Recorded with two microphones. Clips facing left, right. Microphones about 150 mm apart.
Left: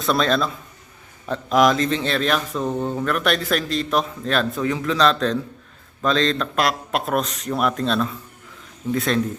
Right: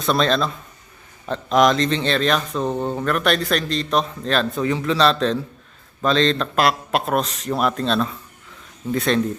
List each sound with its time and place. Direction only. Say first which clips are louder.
0.0 s speech: right 1 dB; centre (ahead or behind)
2.6 s speech: right 1 dB; 30° right (ahead or behind)
2.9 s speech: right 1 dB; centre (ahead or behind)